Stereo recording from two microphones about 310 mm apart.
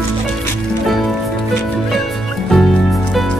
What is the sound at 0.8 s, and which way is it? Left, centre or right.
Music, centre.